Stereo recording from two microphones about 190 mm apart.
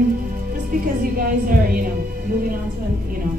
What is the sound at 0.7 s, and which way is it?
A woman's voice, 50° right (ahead or behind).